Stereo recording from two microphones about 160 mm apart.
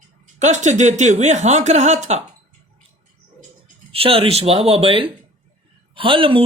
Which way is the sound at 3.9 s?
35° right (ahead or behind).